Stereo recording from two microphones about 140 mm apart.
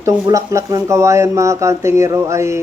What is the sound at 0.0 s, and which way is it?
Speech, 20° right (ahead or behind).